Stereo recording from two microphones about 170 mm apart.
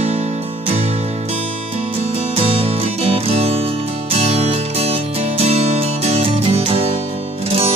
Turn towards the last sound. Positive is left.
turn(degrees=-35)  # may be behind; listen again after turning